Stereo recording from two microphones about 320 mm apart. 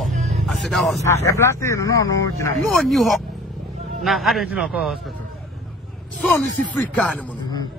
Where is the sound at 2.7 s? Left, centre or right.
Centre.